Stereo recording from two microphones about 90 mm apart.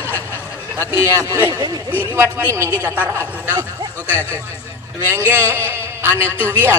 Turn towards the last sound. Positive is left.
turn(degrees=20)  # may be behind; listen again after turning